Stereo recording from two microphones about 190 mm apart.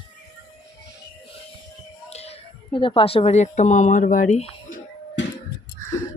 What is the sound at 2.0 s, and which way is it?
A woman's voice, 35° left (ahead or behind).